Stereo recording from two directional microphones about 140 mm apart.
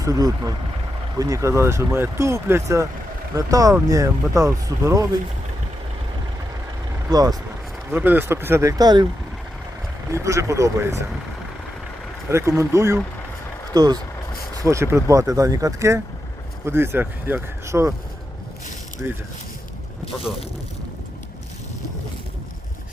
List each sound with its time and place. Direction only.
0.0 s speech: 25° right (ahead or behind)
7.1 s speech: 25° right (ahead or behind)
7.9 s speech: 15° right (ahead or behind); by 9.0 s 30° right (ahead or behind)
10.1 s speech: 20° right (ahead or behind)
12.3 s speech: 20° right (ahead or behind)